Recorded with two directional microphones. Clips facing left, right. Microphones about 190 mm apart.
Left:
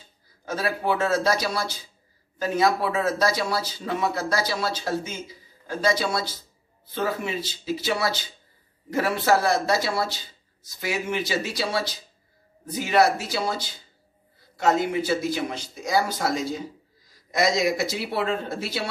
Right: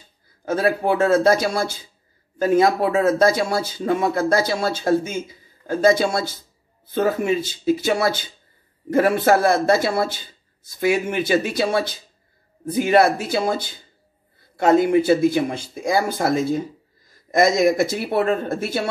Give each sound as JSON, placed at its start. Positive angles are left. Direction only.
{"t": 0.5, "sound": "speech", "side_deg": -55}